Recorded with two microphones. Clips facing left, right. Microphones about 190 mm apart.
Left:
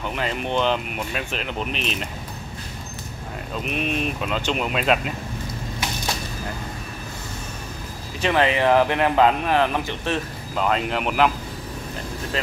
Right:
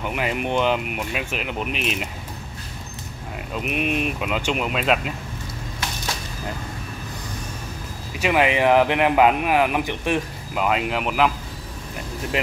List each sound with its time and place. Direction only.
0.0 s a man's voice: 10° right (ahead or behind)
3.5 s a man's voice: 10° right (ahead or behind)
8.2 s a man's voice: 10° right (ahead or behind)